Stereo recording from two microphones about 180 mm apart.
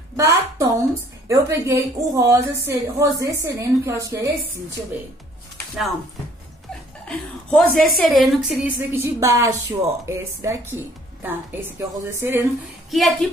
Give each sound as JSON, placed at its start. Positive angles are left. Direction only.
{"t": 0.2, "sound": "a woman's voice", "side_deg": -20}
{"t": 7.1, "sound": "a woman's voice", "side_deg": 0}
{"t": 12.2, "sound": "a woman's voice", "side_deg": -10}
{"t": 12.9, "sound": "a woman's voice", "side_deg": 0}